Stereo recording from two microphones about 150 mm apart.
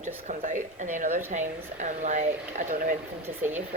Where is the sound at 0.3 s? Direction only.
55° right (ahead or behind).